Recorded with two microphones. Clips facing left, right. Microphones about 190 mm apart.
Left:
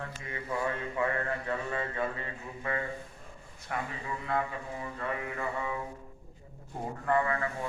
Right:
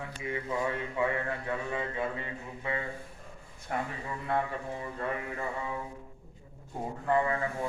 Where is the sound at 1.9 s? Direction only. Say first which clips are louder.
Even; 15° right (ahead or behind).